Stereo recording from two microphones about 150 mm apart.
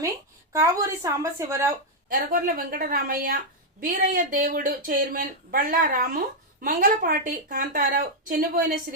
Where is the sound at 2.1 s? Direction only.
70° right (ahead or behind).